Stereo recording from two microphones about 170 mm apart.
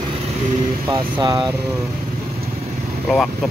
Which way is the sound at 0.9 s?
25° right (ahead or behind).